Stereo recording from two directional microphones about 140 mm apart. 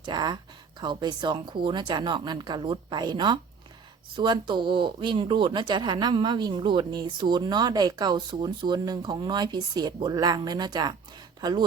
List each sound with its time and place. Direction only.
0.0 s speech: 30° right (ahead or behind)